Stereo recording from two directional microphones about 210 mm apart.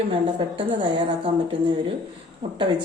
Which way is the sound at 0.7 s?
25° right (ahead or behind).